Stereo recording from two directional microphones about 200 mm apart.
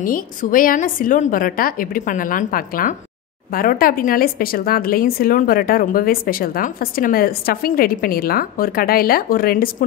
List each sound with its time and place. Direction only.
0.0 s speech: 45° left (ahead or behind)